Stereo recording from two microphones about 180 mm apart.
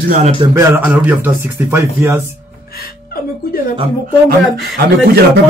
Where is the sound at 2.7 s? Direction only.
55° left (ahead or behind).